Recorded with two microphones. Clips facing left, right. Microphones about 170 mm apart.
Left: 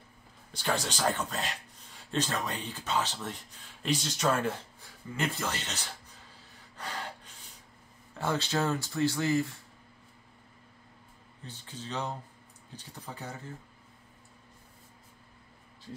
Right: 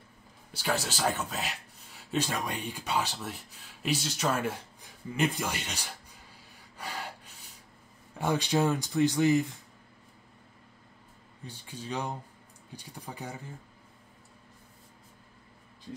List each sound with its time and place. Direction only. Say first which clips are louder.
0.5 s speech: even; 5° right (ahead or behind)
6.8 s gasp: even; 10° right (ahead or behind)
8.2 s speech: right 3 dB; 15° right (ahead or behind)
11.4 s speech: right 2 dB; 10° right (ahead or behind)